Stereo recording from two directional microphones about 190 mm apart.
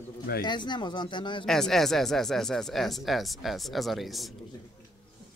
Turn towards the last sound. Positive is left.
turn(degrees=0)  # may be behind; listen again after turning